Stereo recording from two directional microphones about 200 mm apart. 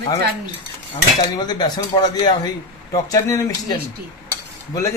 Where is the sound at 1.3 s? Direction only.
20° left (ahead or behind).